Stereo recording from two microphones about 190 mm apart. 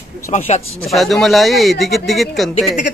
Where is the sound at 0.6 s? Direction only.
90° left.